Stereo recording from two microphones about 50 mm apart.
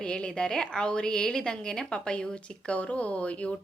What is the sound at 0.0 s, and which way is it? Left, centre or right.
A woman's voice, centre.